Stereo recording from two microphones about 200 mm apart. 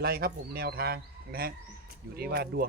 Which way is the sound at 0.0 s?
50° right (ahead or behind).